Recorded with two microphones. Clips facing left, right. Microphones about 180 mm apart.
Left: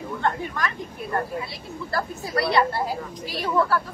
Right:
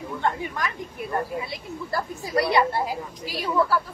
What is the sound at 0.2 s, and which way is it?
Speech, 15° right (ahead or behind).